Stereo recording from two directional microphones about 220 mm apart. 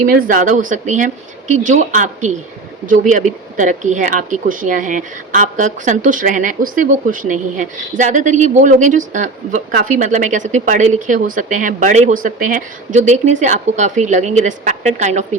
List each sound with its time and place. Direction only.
0.0 s speech: 40° right (ahead or behind)